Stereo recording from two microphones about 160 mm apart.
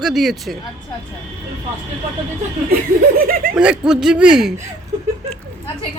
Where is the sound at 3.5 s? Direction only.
5° right (ahead or behind).